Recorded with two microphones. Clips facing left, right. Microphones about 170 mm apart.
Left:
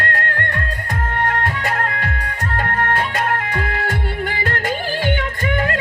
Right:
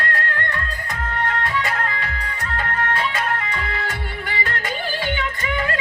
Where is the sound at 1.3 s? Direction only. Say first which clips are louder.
Even; 55° left (ahead or behind).